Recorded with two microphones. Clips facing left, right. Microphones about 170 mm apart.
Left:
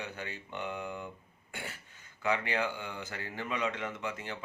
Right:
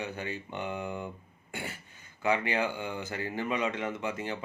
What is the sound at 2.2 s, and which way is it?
Speech, 15° right (ahead or behind).